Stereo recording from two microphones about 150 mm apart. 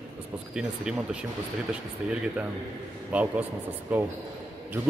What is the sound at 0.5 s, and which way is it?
Speech, 5° right (ahead or behind).